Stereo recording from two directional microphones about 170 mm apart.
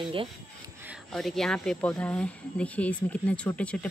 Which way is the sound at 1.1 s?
Centre (ahead or behind).